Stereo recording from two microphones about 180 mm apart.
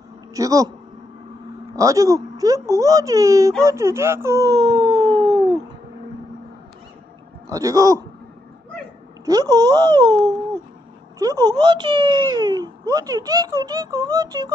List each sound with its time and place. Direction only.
0.3 s a man's voice: 20° right (ahead or behind)
1.8 s speech: 15° right (ahead or behind)
7.4 s speech: 20° right (ahead or behind)
9.2 s speech: 20° right (ahead or behind)